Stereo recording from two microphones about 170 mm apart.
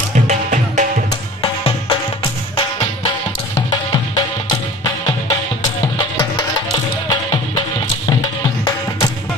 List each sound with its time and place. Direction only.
0.1 s music: 45° right (ahead or behind)
1.4 s music: 30° left (ahead or behind)
3.5 s music: 25° left (ahead or behind)
7.1 s music: 25° left (ahead or behind)